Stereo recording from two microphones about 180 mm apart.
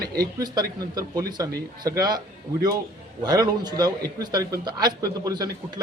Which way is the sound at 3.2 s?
20° right (ahead or behind).